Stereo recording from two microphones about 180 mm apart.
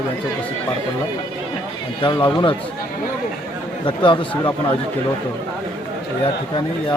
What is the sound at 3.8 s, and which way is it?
Speech, 25° left (ahead or behind).